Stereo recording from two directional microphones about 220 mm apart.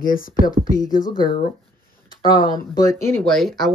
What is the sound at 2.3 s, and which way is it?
Speech, 20° left (ahead or behind).